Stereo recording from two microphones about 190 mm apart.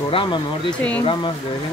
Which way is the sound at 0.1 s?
25° left (ahead or behind).